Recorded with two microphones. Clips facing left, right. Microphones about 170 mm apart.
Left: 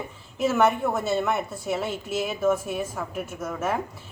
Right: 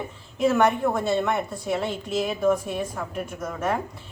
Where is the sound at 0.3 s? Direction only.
5° left (ahead or behind).